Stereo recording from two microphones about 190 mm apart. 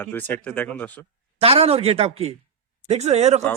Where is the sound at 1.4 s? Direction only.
30° right (ahead or behind).